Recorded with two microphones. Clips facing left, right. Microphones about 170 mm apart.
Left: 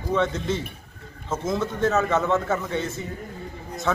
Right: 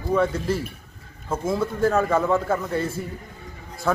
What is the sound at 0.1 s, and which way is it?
A man's voice, 5° right (ahead or behind).